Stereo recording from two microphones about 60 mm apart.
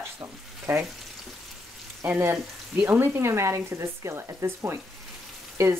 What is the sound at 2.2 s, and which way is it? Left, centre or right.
Speech, right.